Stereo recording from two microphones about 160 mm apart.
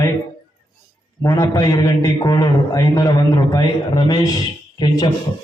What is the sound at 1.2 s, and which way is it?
A man's voice, 20° left (ahead or behind).